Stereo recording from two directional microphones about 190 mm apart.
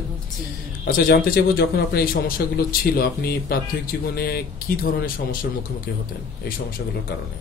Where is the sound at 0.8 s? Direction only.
50° left (ahead or behind).